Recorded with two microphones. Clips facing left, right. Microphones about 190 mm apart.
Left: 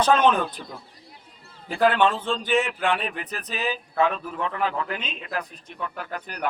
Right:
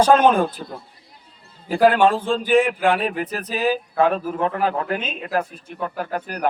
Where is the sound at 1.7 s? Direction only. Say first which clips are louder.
Right 5 dB; 45° right (ahead or behind).